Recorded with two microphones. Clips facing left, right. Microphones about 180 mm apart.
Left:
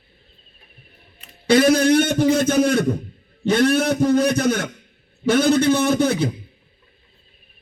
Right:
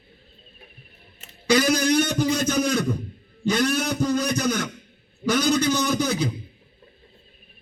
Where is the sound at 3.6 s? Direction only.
55° left (ahead or behind).